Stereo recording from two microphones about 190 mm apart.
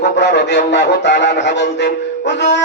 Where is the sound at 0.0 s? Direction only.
60° left (ahead or behind).